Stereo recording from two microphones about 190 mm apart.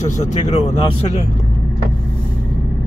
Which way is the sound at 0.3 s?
35° left (ahead or behind).